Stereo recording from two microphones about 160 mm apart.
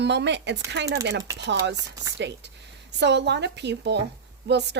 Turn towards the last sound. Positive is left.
turn(degrees=-90)